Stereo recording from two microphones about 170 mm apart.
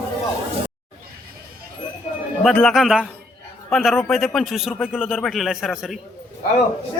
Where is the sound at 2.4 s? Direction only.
Centre (ahead or behind).